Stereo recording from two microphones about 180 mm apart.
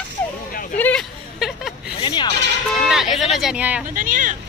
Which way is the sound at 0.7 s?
10° left (ahead or behind).